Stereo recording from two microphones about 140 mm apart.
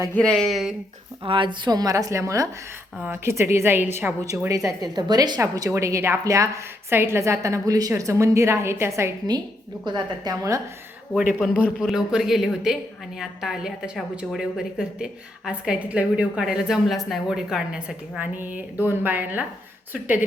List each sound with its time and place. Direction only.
0.1 s speech: 5° left (ahead or behind)
1.2 s a woman's voice: 40° right (ahead or behind)
11.6 s a woman's voice: 5° right (ahead or behind)